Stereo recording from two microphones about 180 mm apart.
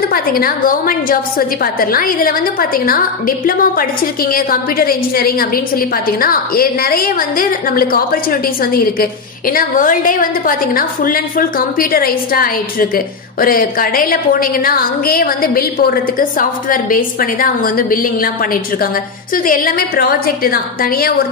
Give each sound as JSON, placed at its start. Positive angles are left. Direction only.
{"t": 0.1, "sound": "a woman's voice", "side_deg": 55}